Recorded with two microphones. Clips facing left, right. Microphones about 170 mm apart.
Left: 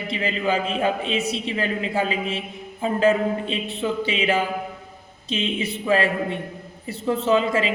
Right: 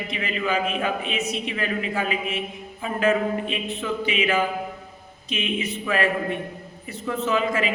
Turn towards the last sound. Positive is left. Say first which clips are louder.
# left 3 dB
turn(degrees=30)  # may be behind; listen again after turning